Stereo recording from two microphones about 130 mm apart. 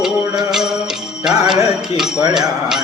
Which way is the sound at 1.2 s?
5° right (ahead or behind).